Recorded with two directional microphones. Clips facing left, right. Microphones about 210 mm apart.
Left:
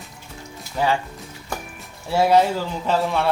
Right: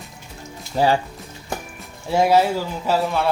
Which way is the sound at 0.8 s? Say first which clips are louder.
Right 4 dB; 30° right (ahead or behind).